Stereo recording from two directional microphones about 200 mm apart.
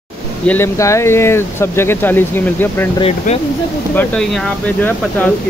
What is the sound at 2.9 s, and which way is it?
Speech, 30° left (ahead or behind).